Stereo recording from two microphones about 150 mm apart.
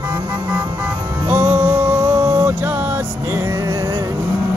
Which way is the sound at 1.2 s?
15° right (ahead or behind).